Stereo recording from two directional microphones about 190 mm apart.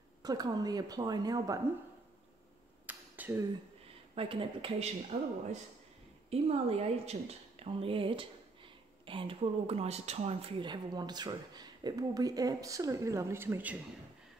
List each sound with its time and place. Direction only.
0.2 s speech: 20° right (ahead or behind)
2.9 s a sound: 10° right (ahead or behind)
4.1 s speech: 30° right (ahead or behind)
6.3 s a woman's voice: 30° right (ahead or behind); by 13.7 s 10° right (ahead or behind)